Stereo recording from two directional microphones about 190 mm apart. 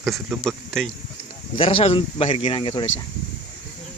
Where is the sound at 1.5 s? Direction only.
30° left (ahead or behind).